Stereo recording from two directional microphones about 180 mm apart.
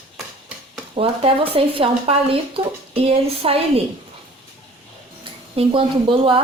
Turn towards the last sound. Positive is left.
turn(degrees=-30)  # may be behind; listen again after turning